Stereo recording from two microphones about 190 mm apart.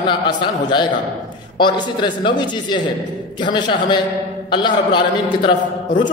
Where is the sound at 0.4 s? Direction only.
25° left (ahead or behind).